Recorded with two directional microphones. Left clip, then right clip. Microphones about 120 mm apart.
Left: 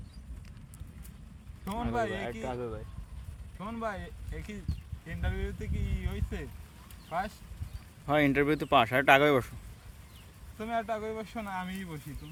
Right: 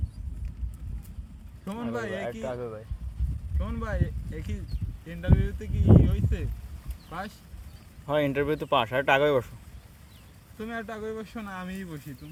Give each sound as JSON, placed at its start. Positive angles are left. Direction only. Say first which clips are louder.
{"t": 1.6, "sound": "speech", "louder": "left 1 dB", "side_deg": 25}
{"t": 2.5, "sound": "speech", "louder": "right 3 dB", "side_deg": 45}
{"t": 3.6, "sound": "speech", "louder": "right 2 dB", "side_deg": 25}
{"t": 8.0, "sound": "speech", "louder": "right 1 dB", "side_deg": 60}
{"t": 10.6, "sound": "speech", "louder": "left 2 dB", "side_deg": 20}